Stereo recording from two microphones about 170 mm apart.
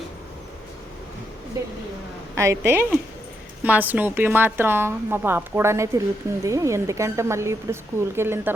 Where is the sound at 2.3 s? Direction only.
15° right (ahead or behind).